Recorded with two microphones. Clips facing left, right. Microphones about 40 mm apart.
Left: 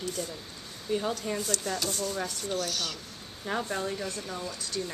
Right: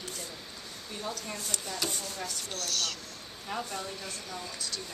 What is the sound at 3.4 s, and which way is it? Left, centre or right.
Speech, left.